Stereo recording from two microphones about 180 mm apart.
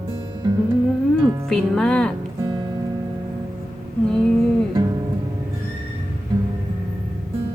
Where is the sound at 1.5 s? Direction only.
Centre (ahead or behind).